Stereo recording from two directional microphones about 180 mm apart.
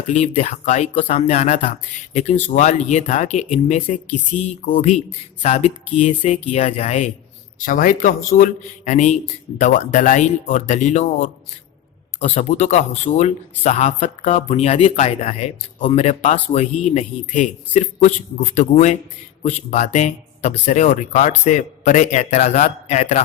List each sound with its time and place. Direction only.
0.1 s speech: 40° left (ahead or behind)